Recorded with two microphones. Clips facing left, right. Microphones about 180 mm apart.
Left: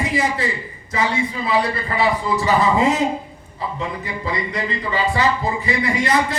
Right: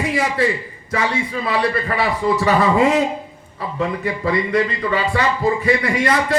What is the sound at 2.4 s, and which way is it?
A man's voice, 55° right (ahead or behind).